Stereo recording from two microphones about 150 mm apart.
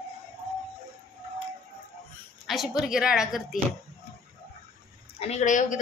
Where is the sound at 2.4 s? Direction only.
Centre (ahead or behind).